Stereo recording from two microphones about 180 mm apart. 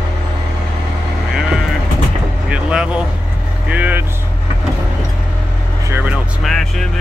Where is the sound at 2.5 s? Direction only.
5° right (ahead or behind).